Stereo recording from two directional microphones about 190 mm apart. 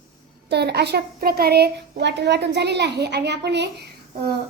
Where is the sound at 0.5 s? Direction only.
60° right (ahead or behind).